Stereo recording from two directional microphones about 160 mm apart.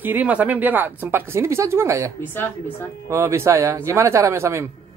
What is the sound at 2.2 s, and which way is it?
Speech, 10° left (ahead or behind).